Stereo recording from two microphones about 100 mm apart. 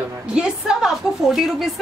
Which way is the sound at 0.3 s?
10° right (ahead or behind).